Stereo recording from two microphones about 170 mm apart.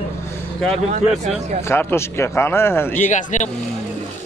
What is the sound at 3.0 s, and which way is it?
Speech, 45° left (ahead or behind).